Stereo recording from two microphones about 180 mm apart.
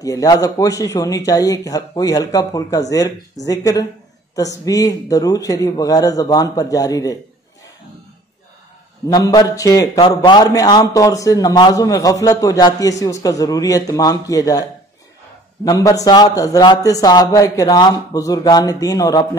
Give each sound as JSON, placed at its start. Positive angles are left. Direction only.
{"t": 0.0, "sound": "a man's voice", "side_deg": 20}
{"t": 9.0, "sound": "a man's voice", "side_deg": 20}